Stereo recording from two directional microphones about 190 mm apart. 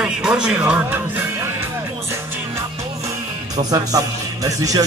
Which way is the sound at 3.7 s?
20° right (ahead or behind).